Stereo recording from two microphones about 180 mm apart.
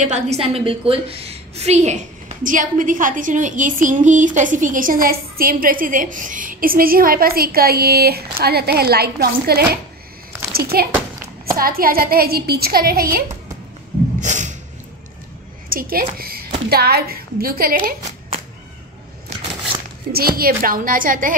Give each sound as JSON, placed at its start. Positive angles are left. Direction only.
{"t": 0.0, "sound": "a woman's voice", "side_deg": -40}
{"t": 14.2, "sound": "a sound", "side_deg": -45}
{"t": 15.7, "sound": "a woman's voice", "side_deg": -50}
{"t": 20.1, "sound": "a woman's voice", "side_deg": -55}